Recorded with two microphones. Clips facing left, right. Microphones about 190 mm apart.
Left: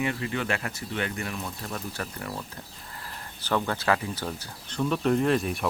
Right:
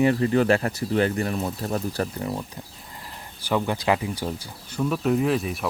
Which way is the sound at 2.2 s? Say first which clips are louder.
Right 6 dB; 20° right (ahead or behind).